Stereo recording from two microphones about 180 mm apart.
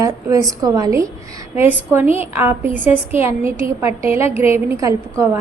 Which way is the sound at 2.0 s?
35° left (ahead or behind).